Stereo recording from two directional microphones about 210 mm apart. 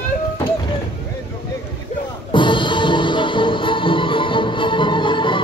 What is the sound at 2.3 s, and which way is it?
Music, 25° left (ahead or behind).